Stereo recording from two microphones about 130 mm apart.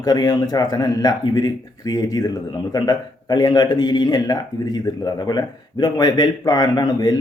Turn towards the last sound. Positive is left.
turn(degrees=30)  # may be behind; listen again after turning